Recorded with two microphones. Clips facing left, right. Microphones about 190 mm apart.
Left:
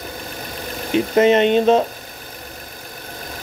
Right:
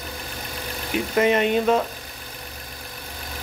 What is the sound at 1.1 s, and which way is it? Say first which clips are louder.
Speech: left 5 dB; 25° left (ahead or behind).